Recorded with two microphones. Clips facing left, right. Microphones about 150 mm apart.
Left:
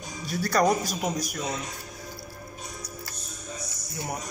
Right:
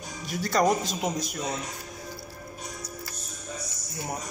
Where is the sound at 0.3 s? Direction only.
20° right (ahead or behind).